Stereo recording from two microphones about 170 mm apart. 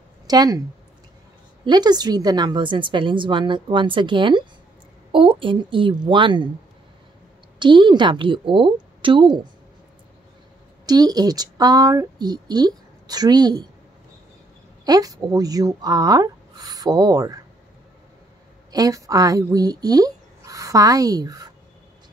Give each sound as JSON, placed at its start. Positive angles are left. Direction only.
{"t": 0.3, "sound": "speech", "side_deg": -20}
{"t": 1.7, "sound": "speech", "side_deg": -25}
{"t": 7.5, "sound": "speech", "side_deg": -25}
{"t": 10.9, "sound": "speech", "side_deg": -25}
{"t": 14.9, "sound": "speech", "side_deg": -20}
{"t": 18.7, "sound": "speech", "side_deg": -20}